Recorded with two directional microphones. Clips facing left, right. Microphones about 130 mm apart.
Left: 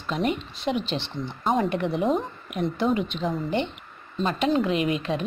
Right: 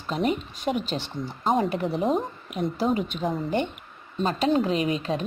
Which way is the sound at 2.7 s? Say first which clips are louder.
Left 1 dB; 35° right (ahead or behind).